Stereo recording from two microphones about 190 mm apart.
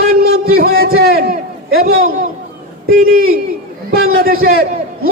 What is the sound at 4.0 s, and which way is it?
Speech, 50° right (ahead or behind).